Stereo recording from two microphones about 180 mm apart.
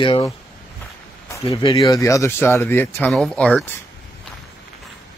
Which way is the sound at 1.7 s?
20° left (ahead or behind).